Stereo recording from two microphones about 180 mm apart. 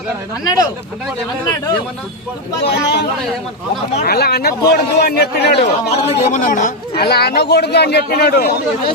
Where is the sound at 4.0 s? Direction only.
60° left (ahead or behind).